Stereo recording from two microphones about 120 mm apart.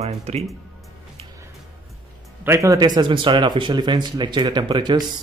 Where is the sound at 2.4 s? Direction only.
25° right (ahead or behind).